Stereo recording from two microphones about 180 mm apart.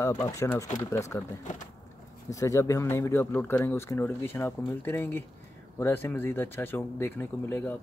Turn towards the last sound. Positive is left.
turn(degrees=10)  # may be behind; listen again after turning